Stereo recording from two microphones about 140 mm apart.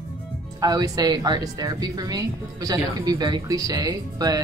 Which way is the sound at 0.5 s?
25° right (ahead or behind).